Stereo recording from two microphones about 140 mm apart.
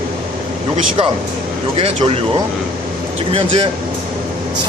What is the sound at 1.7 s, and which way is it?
Speech, 45° right (ahead or behind).